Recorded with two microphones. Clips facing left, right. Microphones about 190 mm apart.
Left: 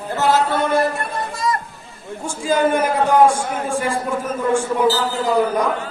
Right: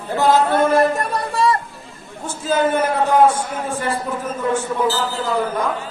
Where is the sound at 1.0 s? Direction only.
35° right (ahead or behind).